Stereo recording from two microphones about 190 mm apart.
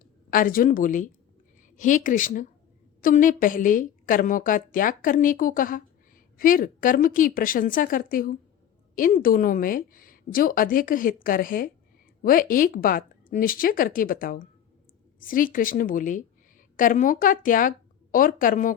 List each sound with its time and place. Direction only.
0.3 s a woman's voice: 45° left (ahead or behind)